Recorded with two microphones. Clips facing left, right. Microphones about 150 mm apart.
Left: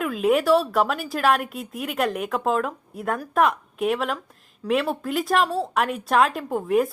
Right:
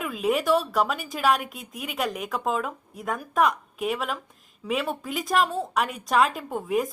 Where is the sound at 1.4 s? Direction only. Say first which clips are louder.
Left 6 dB; 40° left (ahead or behind).